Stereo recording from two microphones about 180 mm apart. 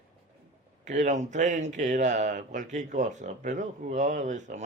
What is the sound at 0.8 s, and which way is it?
Speech, 40° right (ahead or behind).